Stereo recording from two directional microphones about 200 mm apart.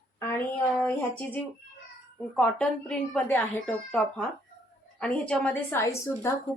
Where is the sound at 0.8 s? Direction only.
10° left (ahead or behind).